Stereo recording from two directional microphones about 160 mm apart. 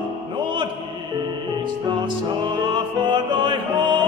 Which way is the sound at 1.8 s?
30° right (ahead or behind).